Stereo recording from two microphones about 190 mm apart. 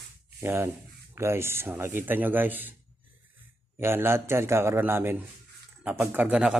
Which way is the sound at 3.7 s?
10° right (ahead or behind).